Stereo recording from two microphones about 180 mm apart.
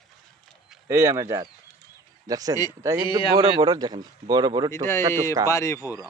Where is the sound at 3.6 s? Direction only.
20° right (ahead or behind).